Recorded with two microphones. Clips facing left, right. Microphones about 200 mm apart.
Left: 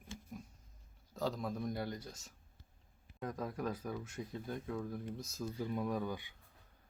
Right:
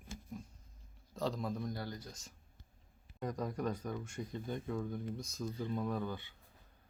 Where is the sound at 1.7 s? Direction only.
20° left (ahead or behind).